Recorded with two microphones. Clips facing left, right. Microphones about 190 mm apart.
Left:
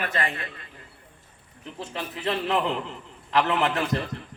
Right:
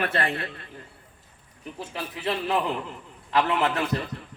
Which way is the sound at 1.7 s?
10° right (ahead or behind).